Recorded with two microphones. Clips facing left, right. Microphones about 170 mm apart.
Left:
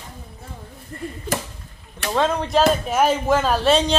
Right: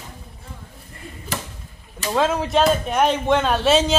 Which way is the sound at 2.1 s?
5° right (ahead or behind).